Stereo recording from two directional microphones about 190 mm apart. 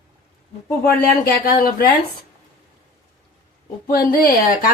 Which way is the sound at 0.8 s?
55° left (ahead or behind).